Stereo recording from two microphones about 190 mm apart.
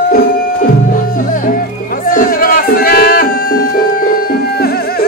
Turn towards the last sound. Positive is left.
turn(degrees=50)  # may be behind; listen again after turning